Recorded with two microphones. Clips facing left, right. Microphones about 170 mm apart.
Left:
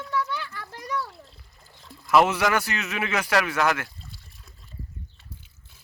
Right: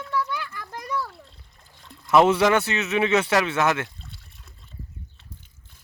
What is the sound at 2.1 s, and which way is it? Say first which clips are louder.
Speech: right 3 dB; 25° right (ahead or behind).